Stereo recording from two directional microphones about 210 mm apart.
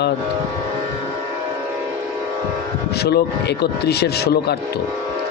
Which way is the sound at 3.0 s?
50° left (ahead or behind).